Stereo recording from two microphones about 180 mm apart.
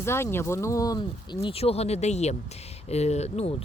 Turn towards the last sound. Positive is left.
turn(degrees=35)  # may be behind; listen again after turning